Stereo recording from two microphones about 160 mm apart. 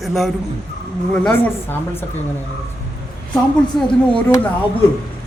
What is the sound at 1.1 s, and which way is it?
Speech, 10° left (ahead or behind).